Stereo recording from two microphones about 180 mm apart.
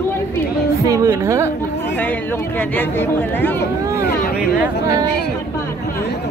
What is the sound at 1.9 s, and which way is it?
Speech, 10° left (ahead or behind).